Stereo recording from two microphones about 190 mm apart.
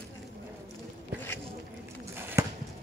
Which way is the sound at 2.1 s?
10° right (ahead or behind).